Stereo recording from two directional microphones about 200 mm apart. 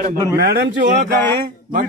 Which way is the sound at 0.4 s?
55° right (ahead or behind).